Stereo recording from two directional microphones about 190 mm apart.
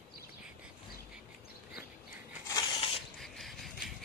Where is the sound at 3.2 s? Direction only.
Centre (ahead or behind).